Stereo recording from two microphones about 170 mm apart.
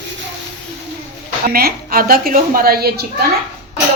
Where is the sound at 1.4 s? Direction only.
60° right (ahead or behind).